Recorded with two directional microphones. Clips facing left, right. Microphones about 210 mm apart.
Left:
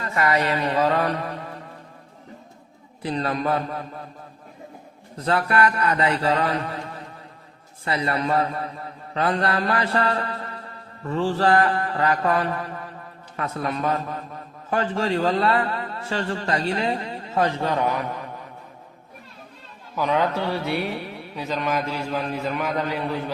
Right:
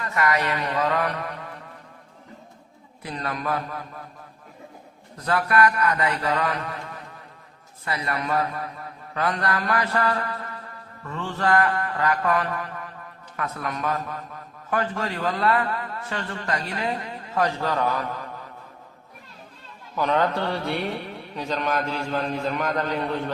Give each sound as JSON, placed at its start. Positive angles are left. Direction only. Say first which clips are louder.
{"t": 0.0, "sound": "a man's voice", "louder": "left 2 dB", "side_deg": 30}
{"t": 3.0, "sound": "a man's voice", "louder": "left 6 dB", "side_deg": 30}
{"t": 5.1, "sound": "a man's voice", "louder": "left 1 dB", "side_deg": 25}
{"t": 20.0, "sound": "mantra", "louder": "even", "side_deg": 5}